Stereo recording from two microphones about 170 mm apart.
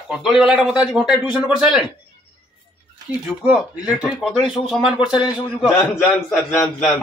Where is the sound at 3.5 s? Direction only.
5° right (ahead or behind).